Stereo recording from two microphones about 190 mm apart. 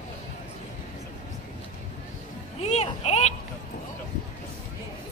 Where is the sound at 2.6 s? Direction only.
35° left (ahead or behind).